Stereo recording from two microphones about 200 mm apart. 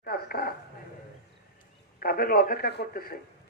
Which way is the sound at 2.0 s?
50° left (ahead or behind).